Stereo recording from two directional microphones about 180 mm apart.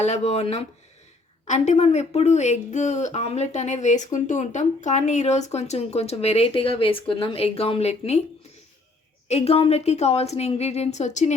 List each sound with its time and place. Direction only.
0.0 s speech: 40° left (ahead or behind)
9.3 s speech: 35° left (ahead or behind)